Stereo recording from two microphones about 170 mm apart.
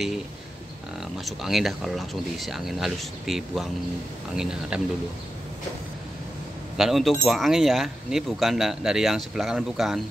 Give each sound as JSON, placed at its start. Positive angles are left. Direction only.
{"t": 1.1, "sound": "speech", "side_deg": 0}
{"t": 6.8, "sound": "speech", "side_deg": 0}